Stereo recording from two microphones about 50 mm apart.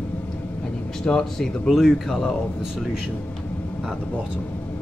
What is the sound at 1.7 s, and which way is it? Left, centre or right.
Speech, centre.